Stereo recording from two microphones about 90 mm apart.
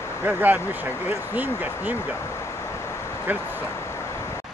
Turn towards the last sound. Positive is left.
turn(degrees=-20)  # may be behind; listen again after turning